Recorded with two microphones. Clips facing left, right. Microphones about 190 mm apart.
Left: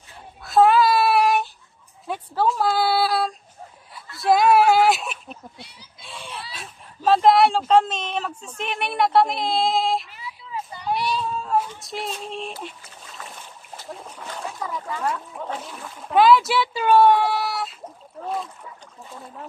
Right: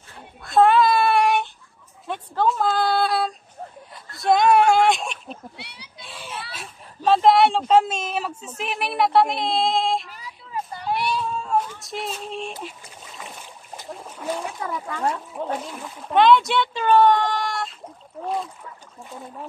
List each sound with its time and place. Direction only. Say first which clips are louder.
0.1 s a sound: even; centre (ahead or behind)
5.6 s speech: right 2 dB; 70° right (ahead or behind)
5.9 s a sound: right 1 dB; centre (ahead or behind)
6.5 s speech: right 1 dB; centre (ahead or behind)
10.0 s a sound: left 2 dB; 40° right (ahead or behind)
11.2 s child singing: even; centre (ahead or behind)
11.7 s speech: even; centre (ahead or behind)
13.2 s boat: right 1 dB; 15° right (ahead or behind)
13.8 s speech: right 7 dB; centre (ahead or behind)
18.2 s splash: right 2 dB; centre (ahead or behind)